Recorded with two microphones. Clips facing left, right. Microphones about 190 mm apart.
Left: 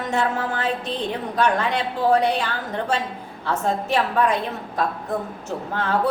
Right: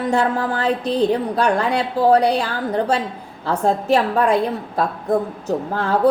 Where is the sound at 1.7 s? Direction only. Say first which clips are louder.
Right 4 dB; 40° right (ahead or behind).